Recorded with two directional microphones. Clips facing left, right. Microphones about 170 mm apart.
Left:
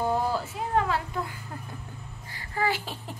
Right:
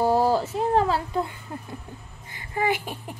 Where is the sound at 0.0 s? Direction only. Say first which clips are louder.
Right 6 dB; 35° right (ahead or behind).